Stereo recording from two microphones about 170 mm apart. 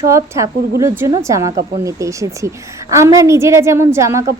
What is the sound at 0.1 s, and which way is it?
A woman's voice, 20° right (ahead or behind).